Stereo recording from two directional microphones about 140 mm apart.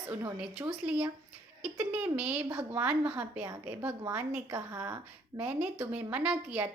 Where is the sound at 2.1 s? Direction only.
10° right (ahead or behind).